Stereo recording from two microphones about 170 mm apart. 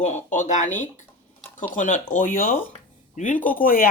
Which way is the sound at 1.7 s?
50° left (ahead or behind).